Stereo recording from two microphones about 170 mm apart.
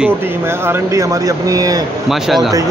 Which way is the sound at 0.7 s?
20° right (ahead or behind).